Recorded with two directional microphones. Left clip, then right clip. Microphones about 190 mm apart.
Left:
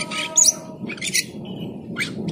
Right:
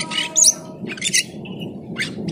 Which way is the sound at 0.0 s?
25° right (ahead or behind).